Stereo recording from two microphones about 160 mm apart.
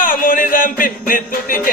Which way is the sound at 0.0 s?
60° left (ahead or behind).